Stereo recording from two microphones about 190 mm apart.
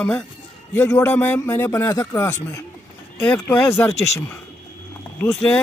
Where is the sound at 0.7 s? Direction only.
15° left (ahead or behind).